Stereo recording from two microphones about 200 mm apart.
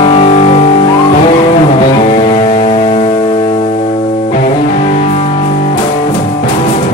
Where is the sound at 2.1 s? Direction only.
25° left (ahead or behind).